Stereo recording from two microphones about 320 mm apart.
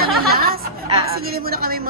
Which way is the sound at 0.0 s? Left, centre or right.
Right.